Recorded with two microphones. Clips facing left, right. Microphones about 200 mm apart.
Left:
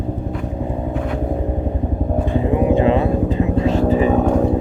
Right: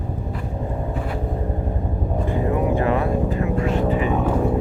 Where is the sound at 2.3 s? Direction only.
20° left (ahead or behind).